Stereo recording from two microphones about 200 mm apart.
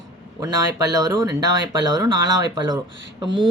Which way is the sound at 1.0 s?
15° right (ahead or behind).